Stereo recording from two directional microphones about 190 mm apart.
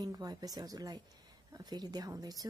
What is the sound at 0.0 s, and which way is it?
A woman's voice, 20° right (ahead or behind).